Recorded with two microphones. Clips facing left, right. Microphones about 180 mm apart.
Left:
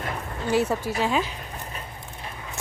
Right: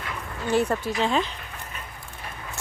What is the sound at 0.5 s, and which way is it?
Speech, 10° left (ahead or behind).